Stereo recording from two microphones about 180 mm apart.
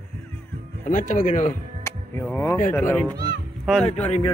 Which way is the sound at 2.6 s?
15° left (ahead or behind).